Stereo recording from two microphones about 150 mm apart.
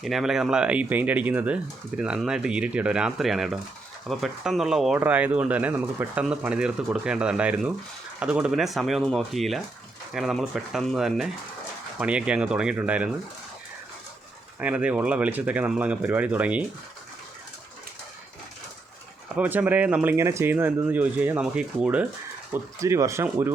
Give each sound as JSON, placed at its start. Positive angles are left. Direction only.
{"t": 0.0, "sound": "speech", "side_deg": 0}
{"t": 14.6, "sound": "speech", "side_deg": -10}
{"t": 19.4, "sound": "speech", "side_deg": -10}
{"t": 22.5, "sound": "speech", "side_deg": -20}